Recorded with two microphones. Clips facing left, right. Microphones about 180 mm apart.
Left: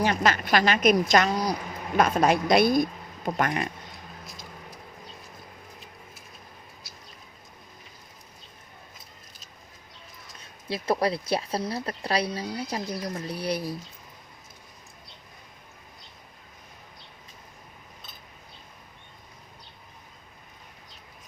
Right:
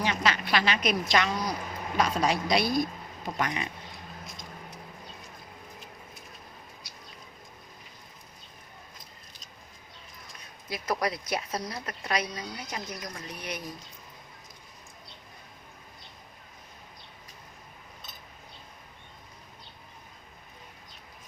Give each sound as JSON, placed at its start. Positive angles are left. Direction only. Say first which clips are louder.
{"t": 0.0, "sound": "a woman's voice", "louder": "left 4 dB", "side_deg": 45}
{"t": 2.0, "sound": "a woman's voice", "louder": "left 5 dB", "side_deg": 55}
{"t": 10.7, "sound": "speech", "louder": "left 5 dB", "side_deg": 30}